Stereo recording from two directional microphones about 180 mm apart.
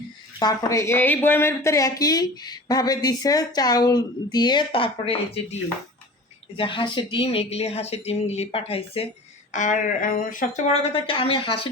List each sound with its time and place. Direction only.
0.3 s speech: 20° left (ahead or behind)
6.6 s speech: 25° left (ahead or behind)
9.5 s speech: 45° left (ahead or behind); by 11.7 s 30° left (ahead or behind)